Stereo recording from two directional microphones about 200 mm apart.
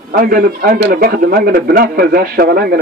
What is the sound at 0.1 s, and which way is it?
A man's voice, 45° right (ahead or behind).